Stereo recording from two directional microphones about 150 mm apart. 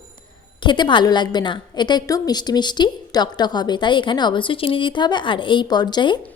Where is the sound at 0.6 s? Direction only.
30° left (ahead or behind).